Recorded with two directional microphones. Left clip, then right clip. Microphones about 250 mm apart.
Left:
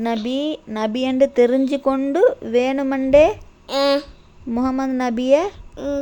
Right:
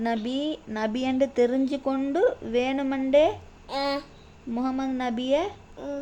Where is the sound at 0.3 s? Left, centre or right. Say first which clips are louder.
Left 6 dB; centre.